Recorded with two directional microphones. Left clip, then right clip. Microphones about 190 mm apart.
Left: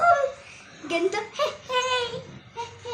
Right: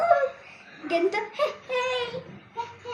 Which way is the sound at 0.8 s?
Centre (ahead or behind).